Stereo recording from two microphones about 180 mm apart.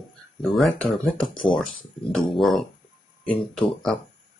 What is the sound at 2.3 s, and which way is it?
Speech, centre (ahead or behind).